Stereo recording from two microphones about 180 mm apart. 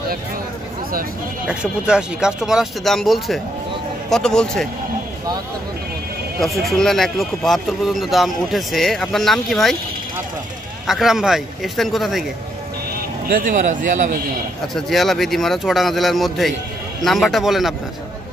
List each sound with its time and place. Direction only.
1.5 s speech: 5° right (ahead or behind)
6.4 s speech: centre (ahead or behind)
10.9 s speech: centre (ahead or behind)
12.9 s speech: 50° right (ahead or behind)
14.7 s speech: centre (ahead or behind)